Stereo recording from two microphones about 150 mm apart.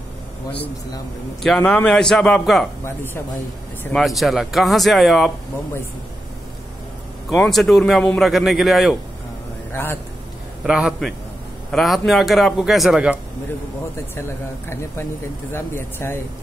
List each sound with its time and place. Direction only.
1.4 s speech: 5° left (ahead or behind)
3.9 s speech: centre (ahead or behind)
7.4 s speech: centre (ahead or behind)
9.7 s speech: 15° left (ahead or behind)
10.6 s speech: 5° right (ahead or behind)
15.5 s speech: 15° left (ahead or behind)